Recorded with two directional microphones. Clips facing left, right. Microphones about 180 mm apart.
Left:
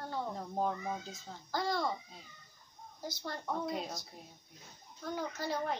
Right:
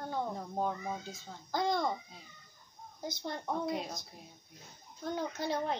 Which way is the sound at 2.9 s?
20° right (ahead or behind).